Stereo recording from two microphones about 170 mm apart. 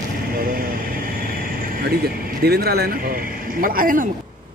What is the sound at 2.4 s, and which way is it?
Speech, 65° right (ahead or behind).